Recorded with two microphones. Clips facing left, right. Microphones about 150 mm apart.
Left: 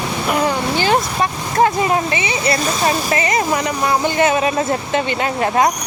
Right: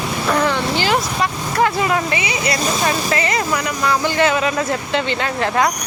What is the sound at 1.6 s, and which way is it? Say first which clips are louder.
Speech: left 2 dB; 25° left (ahead or behind).